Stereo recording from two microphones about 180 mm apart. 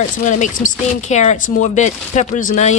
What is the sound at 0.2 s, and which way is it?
A woman's voice, 45° left (ahead or behind).